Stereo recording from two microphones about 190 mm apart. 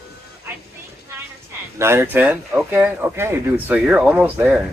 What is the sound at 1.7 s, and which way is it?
Speech, 15° right (ahead or behind).